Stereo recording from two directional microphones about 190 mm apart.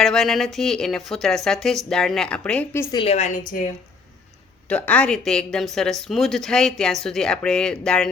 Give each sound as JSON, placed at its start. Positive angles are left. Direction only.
{"t": 0.0, "sound": "a woman's voice", "side_deg": 0}
{"t": 2.9, "sound": "a woman's voice", "side_deg": 30}
{"t": 4.7, "sound": "a woman's voice", "side_deg": 5}